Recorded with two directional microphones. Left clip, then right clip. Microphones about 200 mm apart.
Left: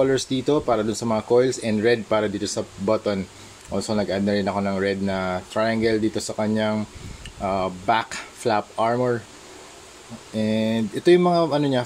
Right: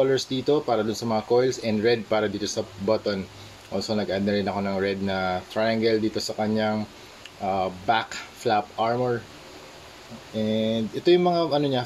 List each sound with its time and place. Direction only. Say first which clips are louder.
0.0 s speech: left 2 dB; 30° left (ahead or behind)
10.3 s speech: left 1 dB; 30° left (ahead or behind)